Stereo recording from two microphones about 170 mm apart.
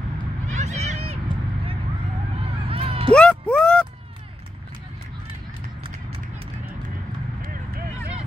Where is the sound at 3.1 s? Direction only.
5° left (ahead or behind).